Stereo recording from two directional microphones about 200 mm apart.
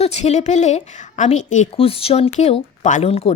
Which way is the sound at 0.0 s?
35° left (ahead or behind).